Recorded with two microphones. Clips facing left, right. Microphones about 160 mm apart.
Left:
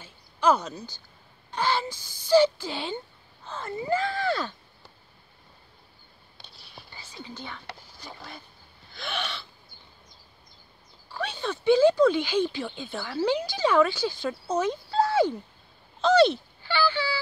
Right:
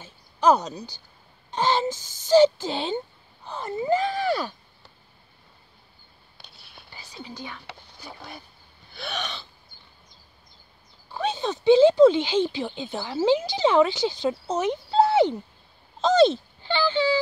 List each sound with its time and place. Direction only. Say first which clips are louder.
0.0 s a sound: right 3 dB; 20° right (ahead or behind)
1.5 s speech: right 4 dB; 20° right (ahead or behind)
6.5 s whispering: left 5 dB; centre (ahead or behind)
7.2 s speech: right 1 dB; 15° right (ahead or behind)
8.9 s hiccup: right 1 dB; 15° right (ahead or behind)
11.1 s speech: right 4 dB; 20° right (ahead or behind)
16.2 s a sound: right 4 dB; 20° right (ahead or behind)